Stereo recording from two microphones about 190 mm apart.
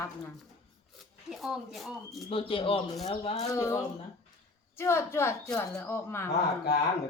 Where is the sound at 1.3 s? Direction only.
Centre (ahead or behind).